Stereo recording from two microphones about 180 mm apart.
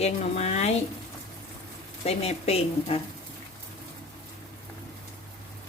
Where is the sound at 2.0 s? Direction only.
35° left (ahead or behind).